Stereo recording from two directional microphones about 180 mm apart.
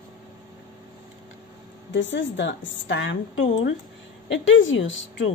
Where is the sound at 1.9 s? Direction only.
90° left.